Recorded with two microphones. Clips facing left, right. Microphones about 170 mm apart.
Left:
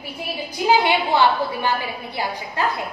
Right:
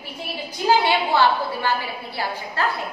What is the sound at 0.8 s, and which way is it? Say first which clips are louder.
A woman's voice: left 1 dB; 20° left (ahead or behind).